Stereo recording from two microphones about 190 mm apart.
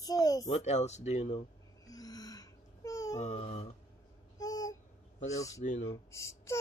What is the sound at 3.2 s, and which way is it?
Speech, 35° left (ahead or behind).